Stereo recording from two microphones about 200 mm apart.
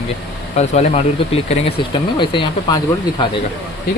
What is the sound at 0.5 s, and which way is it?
Speech, 35° left (ahead or behind).